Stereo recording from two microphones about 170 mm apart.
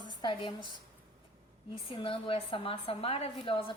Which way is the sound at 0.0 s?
25° left (ahead or behind).